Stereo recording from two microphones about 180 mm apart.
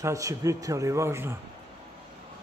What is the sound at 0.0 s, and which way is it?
A man's voice, 15° right (ahead or behind).